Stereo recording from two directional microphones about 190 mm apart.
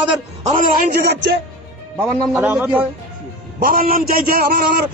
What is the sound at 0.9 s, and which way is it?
Speech, 60° right (ahead or behind).